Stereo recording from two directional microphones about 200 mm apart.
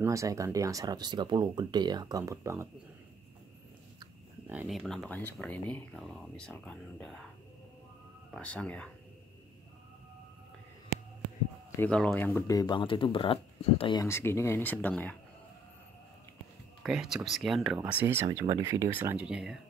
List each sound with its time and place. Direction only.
0.0 s speech: 15° right (ahead or behind)
4.5 s speech: 5° right (ahead or behind)
8.3 s speech: 5° left (ahead or behind)
11.8 s speech: 5° left (ahead or behind); by 14.0 s 25° left (ahead or behind)
14.0 s speech: 15° left (ahead or behind)
16.8 s speech: centre (ahead or behind)